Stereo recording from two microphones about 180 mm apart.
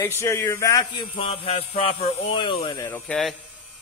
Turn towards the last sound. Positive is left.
turn(degrees=5)  # may be behind; listen again after turning